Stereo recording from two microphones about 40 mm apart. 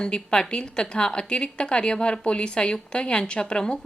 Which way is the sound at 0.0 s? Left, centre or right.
Left.